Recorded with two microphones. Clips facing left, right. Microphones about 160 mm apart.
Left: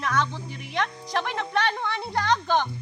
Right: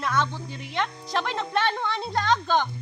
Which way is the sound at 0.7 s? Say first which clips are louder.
Even; 15° left (ahead or behind).